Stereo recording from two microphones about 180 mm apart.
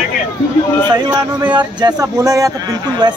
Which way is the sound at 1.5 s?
20° right (ahead or behind).